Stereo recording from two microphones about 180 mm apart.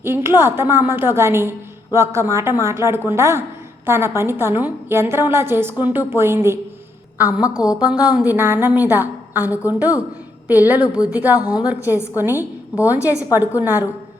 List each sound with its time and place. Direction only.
0.0 s a woman's voice: 15° right (ahead or behind)